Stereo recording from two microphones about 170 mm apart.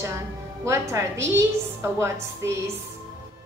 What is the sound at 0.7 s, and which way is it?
A woman's voice, 15° right (ahead or behind).